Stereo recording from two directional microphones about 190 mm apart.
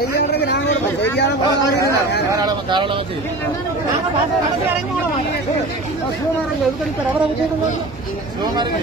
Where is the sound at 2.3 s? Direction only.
20° right (ahead or behind).